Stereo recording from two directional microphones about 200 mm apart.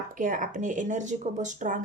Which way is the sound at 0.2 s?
40° right (ahead or behind).